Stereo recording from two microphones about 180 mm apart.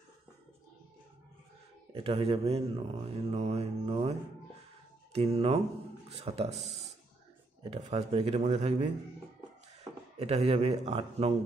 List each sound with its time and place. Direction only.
1.9 s speech: 30° right (ahead or behind)
10.1 s speech: 35° right (ahead or behind)